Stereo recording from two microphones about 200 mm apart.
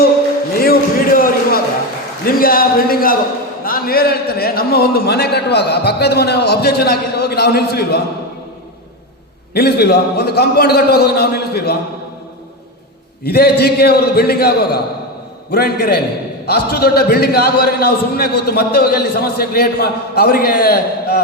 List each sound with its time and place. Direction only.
0.6 s a sound: 50° left (ahead or behind)
2.2 s a man's voice: 45° left (ahead or behind)
9.6 s a man's voice: 55° left (ahead or behind)
13.2 s a man's voice: 50° left (ahead or behind)